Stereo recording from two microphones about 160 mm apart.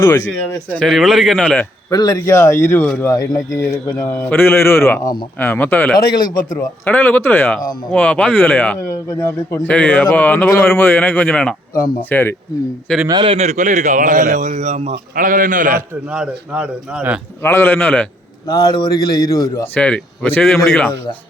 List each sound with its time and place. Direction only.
0.0 s speech: 20° left (ahead or behind)
0.3 s a man's voice: 5° left (ahead or behind)
1.9 s speech: 25° left (ahead or behind)
6.2 s a man's voice: 60° left (ahead or behind)
6.8 s speech: 10° left (ahead or behind)
13.1 s a man's voice: 25° right (ahead or behind)
13.3 s speech: 45° right (ahead or behind)
15.1 s a man's voice: 60° right (ahead or behind)
16.1 s a man's voice: 5° right (ahead or behind)
17.4 s speech: 15° left (ahead or behind)
18.4 s speech: 30° left (ahead or behind)
19.7 s speech: 10° left (ahead or behind)